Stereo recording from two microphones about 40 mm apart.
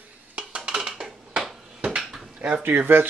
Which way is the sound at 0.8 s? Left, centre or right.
Centre.